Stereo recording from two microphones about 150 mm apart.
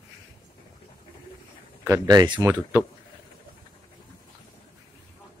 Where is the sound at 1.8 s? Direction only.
25° right (ahead or behind).